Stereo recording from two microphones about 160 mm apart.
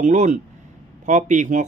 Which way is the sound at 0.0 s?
45° right (ahead or behind).